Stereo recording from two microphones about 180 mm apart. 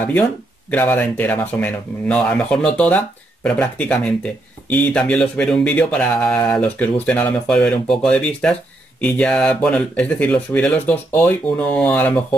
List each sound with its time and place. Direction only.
0.7 s speech: 10° left (ahead or behind)